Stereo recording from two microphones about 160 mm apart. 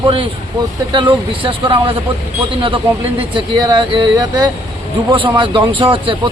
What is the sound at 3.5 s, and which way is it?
A man's voice, 25° right (ahead or behind).